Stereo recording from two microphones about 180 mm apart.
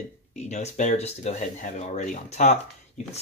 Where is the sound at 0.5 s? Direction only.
40° left (ahead or behind).